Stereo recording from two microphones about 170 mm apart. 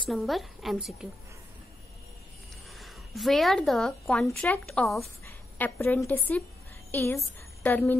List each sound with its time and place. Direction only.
0.1 s a woman's voice: centre (ahead or behind)
2.8 s a woman's voice: centre (ahead or behind)
5.2 s a woman's voice: 15° left (ahead or behind)